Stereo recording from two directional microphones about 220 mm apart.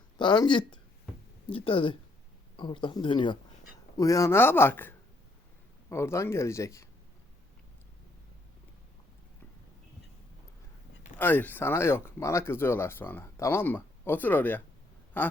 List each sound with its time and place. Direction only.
0.2 s speech: 20° left (ahead or behind)
11.2 s speech: 10° left (ahead or behind)